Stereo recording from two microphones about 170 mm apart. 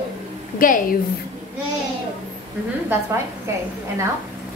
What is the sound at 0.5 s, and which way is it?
Speech, 55° left (ahead or behind).